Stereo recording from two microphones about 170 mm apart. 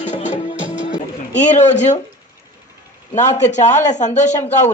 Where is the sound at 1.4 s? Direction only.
45° left (ahead or behind).